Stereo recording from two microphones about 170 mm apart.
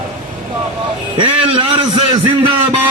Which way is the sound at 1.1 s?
30° right (ahead or behind).